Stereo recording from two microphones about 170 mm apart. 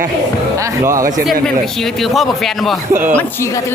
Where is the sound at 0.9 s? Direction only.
20° right (ahead or behind).